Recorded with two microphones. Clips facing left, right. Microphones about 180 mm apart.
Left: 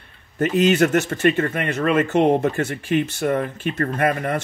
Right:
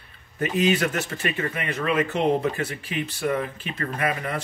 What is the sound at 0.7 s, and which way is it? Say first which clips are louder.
Speech: left 8 dB; 45° left (ahead or behind).